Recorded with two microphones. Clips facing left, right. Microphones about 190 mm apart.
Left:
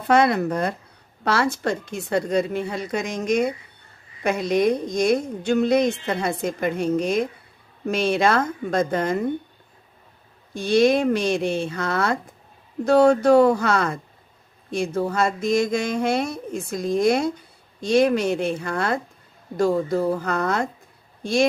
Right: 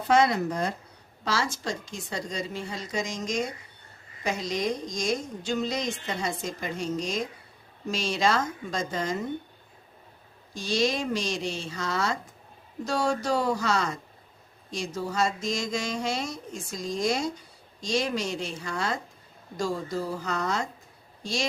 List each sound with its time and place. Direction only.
0.0 s a woman's voice: 60° left (ahead or behind)
10.5 s a woman's voice: 55° left (ahead or behind)